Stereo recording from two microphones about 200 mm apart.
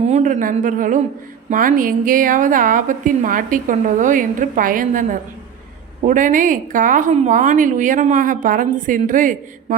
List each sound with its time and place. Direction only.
0.0 s a woman's voice: 35° right (ahead or behind)